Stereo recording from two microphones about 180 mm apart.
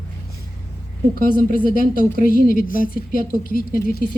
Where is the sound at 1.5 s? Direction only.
50° left (ahead or behind).